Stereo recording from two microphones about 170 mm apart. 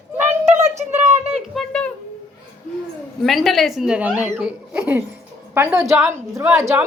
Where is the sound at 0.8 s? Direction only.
40° right (ahead or behind).